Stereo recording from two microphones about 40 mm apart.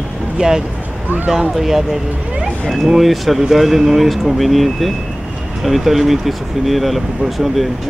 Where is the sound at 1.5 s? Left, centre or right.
Centre.